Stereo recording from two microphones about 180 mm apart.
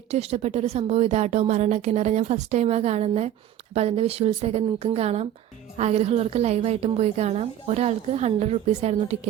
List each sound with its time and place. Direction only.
0.1 s a woman's voice: 35° right (ahead or behind)